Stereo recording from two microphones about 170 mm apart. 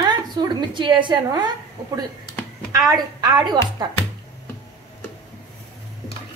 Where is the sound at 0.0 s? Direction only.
25° right (ahead or behind).